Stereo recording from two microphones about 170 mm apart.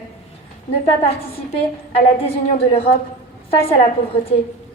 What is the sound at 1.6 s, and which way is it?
Speech, 35° left (ahead or behind).